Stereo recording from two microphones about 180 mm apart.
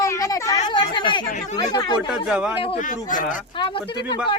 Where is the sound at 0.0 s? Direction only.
15° left (ahead or behind).